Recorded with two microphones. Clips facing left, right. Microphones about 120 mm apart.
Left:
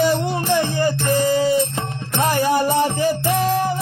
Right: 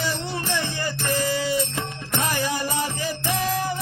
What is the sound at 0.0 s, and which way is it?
Music, 45° left (ahead or behind).